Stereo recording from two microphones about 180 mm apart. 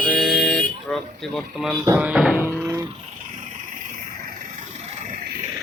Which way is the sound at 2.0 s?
5° right (ahead or behind).